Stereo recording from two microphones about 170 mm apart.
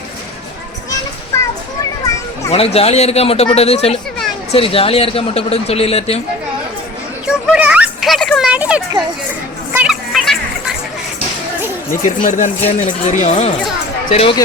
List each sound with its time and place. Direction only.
2.5 s speech: 35° left (ahead or behind)
7.3 s a child's voice: 5° right (ahead or behind)
9.7 s a sound: 5° right (ahead or behind)
12.0 s speech: 50° left (ahead or behind)